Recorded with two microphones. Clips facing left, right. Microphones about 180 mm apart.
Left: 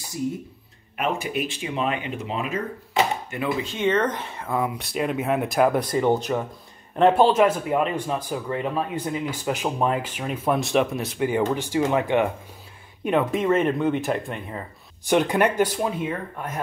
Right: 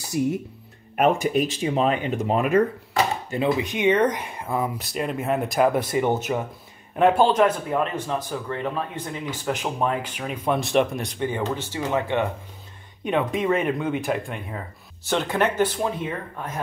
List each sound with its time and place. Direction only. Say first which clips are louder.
0.2 s speech: right 4 dB; 65° right (ahead or behind)
0.9 s speech: right 6 dB; 45° right (ahead or behind)
3.3 s speech: right 4 dB; 35° right (ahead or behind)
3.5 s speech: even; 15° right (ahead or behind); by 12.3 s 15° left (ahead or behind)
13.0 s speech: left 1 dB; centre (ahead or behind)
15.0 s speech: left 3 dB; 15° left (ahead or behind)